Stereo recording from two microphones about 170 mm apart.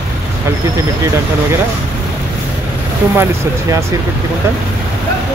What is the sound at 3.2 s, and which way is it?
Speech, 15° right (ahead or behind).